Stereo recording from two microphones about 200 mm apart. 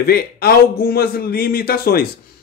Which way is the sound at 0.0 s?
50° left (ahead or behind).